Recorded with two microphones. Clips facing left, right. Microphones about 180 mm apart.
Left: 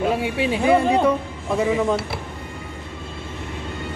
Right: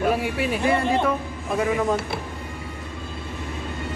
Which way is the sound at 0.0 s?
25° left (ahead or behind).